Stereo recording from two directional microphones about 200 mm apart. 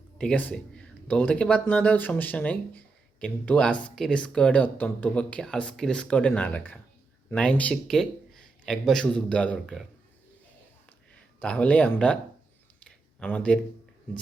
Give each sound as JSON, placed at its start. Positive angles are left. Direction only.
{"t": 0.2, "sound": "speech", "side_deg": 5}
{"t": 11.3, "sound": "speech", "side_deg": 5}
{"t": 13.1, "sound": "speech", "side_deg": 5}